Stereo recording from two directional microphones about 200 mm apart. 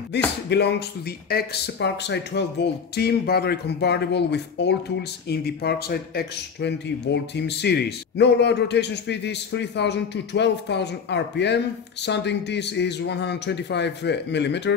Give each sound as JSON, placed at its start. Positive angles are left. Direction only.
{"t": 0.1, "sound": "a man's voice", "side_deg": 60}